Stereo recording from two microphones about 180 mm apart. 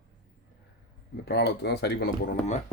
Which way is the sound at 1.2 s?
65° left (ahead or behind).